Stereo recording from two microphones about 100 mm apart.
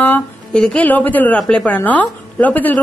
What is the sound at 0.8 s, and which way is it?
Speech, 15° left (ahead or behind).